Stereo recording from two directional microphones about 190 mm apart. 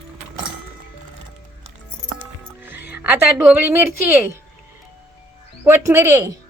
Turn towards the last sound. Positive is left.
turn(degrees=-15)  # may be behind; listen again after turning